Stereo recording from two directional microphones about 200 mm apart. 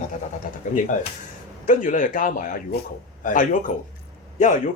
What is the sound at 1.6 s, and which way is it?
Speech, 40° left (ahead or behind).